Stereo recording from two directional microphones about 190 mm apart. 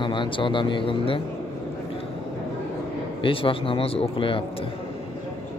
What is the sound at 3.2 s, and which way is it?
Speech, 30° left (ahead or behind).